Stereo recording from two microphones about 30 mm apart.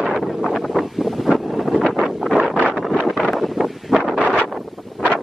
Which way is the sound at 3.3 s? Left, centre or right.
Centre.